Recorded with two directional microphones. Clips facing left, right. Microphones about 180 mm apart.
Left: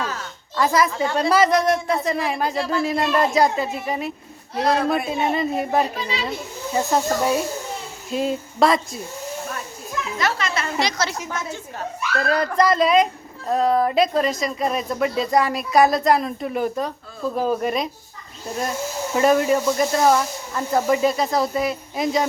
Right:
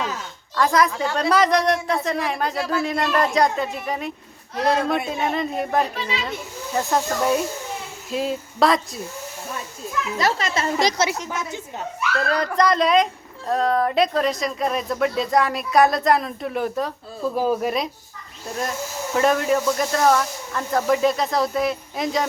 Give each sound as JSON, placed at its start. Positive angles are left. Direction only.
{"t": 0.5, "sound": "speech", "side_deg": 5}
{"t": 5.9, "sound": "a child's voice", "side_deg": 35}
{"t": 6.7, "sound": "speech", "side_deg": 0}
{"t": 10.2, "sound": "speech", "side_deg": -35}
{"t": 11.3, "sound": "a woman's voice", "side_deg": -20}
{"t": 12.2, "sound": "speech", "side_deg": 5}
{"t": 19.1, "sound": "speech", "side_deg": 5}